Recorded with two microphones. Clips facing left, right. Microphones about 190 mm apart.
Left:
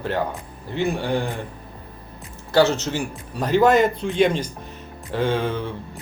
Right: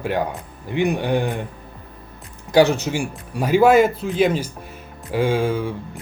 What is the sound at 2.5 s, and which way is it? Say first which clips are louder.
Speech: right 2 dB; 15° right (ahead or behind).